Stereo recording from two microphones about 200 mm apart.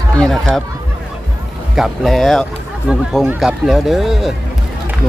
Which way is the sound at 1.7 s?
Centre (ahead or behind).